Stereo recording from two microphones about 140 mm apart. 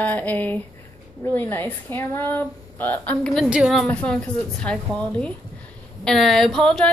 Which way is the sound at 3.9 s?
10° left (ahead or behind).